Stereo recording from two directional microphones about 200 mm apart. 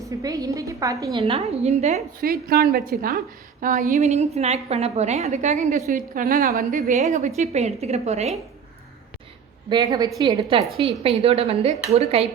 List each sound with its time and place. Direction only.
0.0 s a woman's voice: 15° right (ahead or behind)
1.2 s a woman's voice: 30° right (ahead or behind)
2.2 s a woman's voice: 50° right (ahead or behind); by 8.4 s 35° right (ahead or behind)
9.6 s a woman's voice: 20° right (ahead or behind)